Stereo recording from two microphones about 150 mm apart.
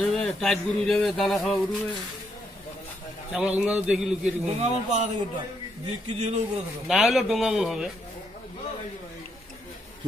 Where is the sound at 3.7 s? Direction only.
5° right (ahead or behind).